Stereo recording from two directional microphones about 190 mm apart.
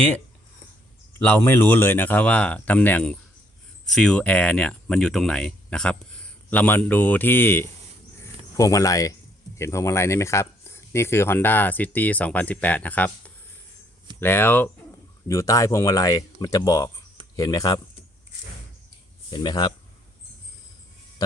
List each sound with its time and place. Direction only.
1.2 s speech: 10° left (ahead or behind)
8.2 s cricket: 15° left (ahead or behind)
9.6 s speech: 15° left (ahead or behind)
19.3 s speech: 25° left (ahead or behind)